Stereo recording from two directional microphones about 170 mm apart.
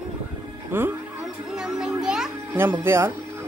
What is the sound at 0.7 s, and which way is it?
Speech, 10° right (ahead or behind).